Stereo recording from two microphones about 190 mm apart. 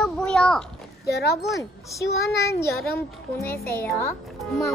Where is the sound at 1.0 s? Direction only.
55° left (ahead or behind).